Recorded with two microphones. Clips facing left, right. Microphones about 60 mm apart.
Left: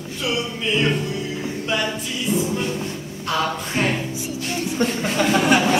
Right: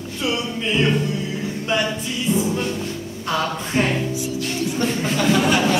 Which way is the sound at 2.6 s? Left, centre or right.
Left.